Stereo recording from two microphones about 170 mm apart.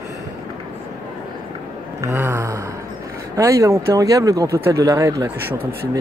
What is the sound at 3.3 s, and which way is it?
Speech, 20° right (ahead or behind).